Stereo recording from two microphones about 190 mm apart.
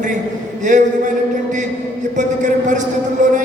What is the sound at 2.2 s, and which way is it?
A man's voice, 40° right (ahead or behind).